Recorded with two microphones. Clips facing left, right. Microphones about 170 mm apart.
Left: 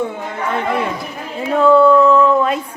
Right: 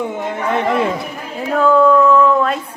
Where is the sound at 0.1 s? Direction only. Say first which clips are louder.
Right 3 dB; 20° right (ahead or behind).